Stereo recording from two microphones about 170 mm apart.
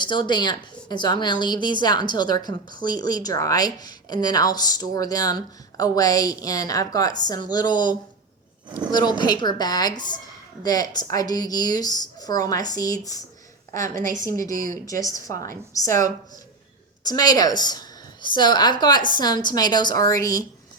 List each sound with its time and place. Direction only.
0.0 s a woman's voice: 25° left (ahead or behind)
13.8 s a woman's voice: 50° right (ahead or behind)
14.3 s speech: 20° left (ahead or behind)
14.5 s a woman's voice: 50° right (ahead or behind)
14.8 s a woman's voice: 20° left (ahead or behind)
17.1 s a woman's voice: 20° left (ahead or behind)